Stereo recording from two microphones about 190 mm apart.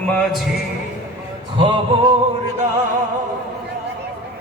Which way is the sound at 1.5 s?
25° right (ahead or behind).